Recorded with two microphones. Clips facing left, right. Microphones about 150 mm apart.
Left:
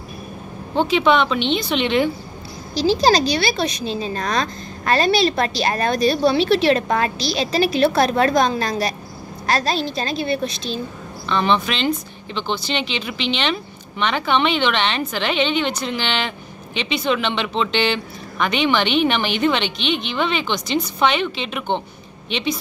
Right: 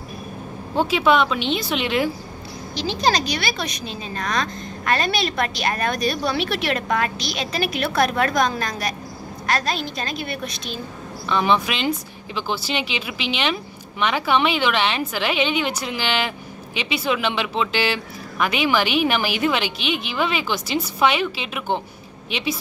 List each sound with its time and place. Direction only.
0.7 s speech: 5° right (ahead or behind)
2.7 s a woman's voice: 35° left (ahead or behind)
11.2 s speech: 10° right (ahead or behind)